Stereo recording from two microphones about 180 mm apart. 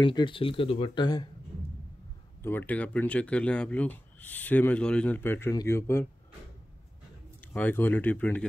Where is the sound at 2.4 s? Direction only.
10° left (ahead or behind).